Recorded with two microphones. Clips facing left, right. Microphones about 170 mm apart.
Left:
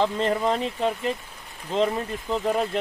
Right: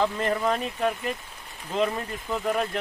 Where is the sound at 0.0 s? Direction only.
20° left (ahead or behind).